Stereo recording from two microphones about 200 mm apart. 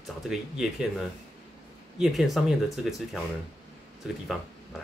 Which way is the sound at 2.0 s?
Centre (ahead or behind).